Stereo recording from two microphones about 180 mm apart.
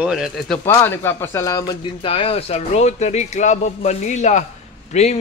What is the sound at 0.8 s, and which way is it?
Speech, 15° left (ahead or behind).